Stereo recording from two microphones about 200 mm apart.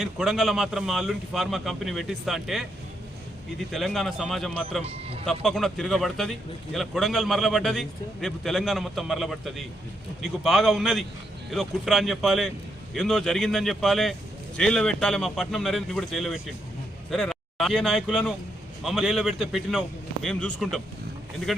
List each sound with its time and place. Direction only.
0.0 s a man's voice: centre (ahead or behind)
3.7 s a man's voice: centre (ahead or behind)
4.8 s speech: 30° right (ahead or behind)
5.2 s a man's voice: centre (ahead or behind)